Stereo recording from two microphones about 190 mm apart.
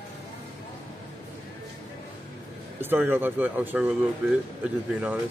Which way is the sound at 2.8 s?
10° right (ahead or behind).